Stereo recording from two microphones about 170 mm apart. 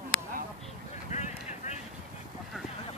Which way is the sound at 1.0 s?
45° left (ahead or behind).